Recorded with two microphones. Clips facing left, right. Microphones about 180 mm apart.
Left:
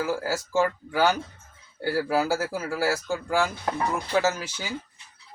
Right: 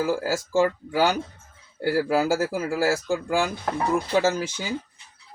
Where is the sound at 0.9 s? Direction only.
15° right (ahead or behind).